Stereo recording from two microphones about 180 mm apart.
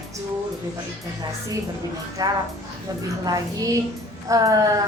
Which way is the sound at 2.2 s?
20° right (ahead or behind).